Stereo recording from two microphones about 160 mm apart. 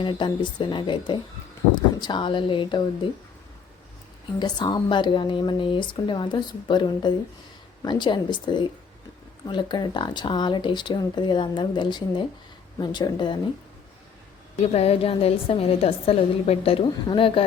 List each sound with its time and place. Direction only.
0.0 s a woman's voice: 30° left (ahead or behind)
4.4 s speech: 30° left (ahead or behind)
14.6 s a woman's voice: 40° left (ahead or behind)